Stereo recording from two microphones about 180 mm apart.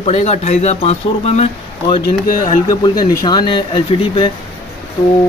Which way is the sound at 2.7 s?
20° left (ahead or behind).